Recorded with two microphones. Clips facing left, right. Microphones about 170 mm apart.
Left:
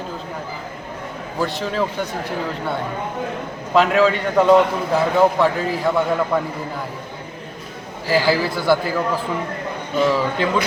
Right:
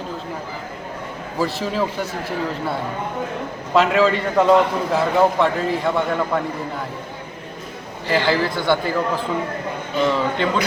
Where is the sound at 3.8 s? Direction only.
Centre (ahead or behind).